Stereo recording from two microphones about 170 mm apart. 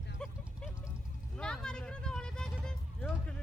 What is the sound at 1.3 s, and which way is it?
Vehicle, 5° left (ahead or behind).